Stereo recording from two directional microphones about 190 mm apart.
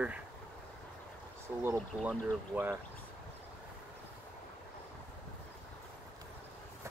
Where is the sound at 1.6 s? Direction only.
15° right (ahead or behind).